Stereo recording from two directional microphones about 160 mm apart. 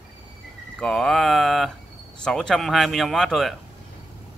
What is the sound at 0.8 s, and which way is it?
Speech, centre (ahead or behind).